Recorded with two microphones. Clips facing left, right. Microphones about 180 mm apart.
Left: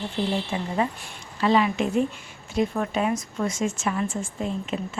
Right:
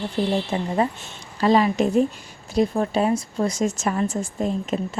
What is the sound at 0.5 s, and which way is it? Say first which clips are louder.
A woman's voice: right 3 dB; 40° right (ahead or behind).